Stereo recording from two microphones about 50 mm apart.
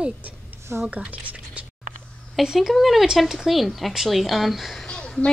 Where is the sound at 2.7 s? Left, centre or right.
Centre.